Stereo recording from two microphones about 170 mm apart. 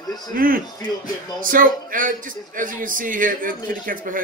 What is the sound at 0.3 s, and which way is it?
Speech, 55° right (ahead or behind).